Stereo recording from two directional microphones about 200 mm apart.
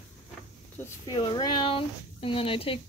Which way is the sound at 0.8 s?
20° left (ahead or behind).